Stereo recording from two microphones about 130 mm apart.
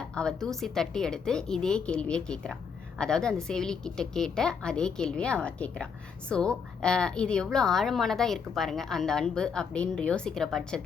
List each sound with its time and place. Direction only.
0.1 s a woman's voice: 5° left (ahead or behind)